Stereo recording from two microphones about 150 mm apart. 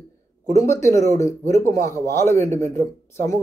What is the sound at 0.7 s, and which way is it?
A man's voice, 20° left (ahead or behind).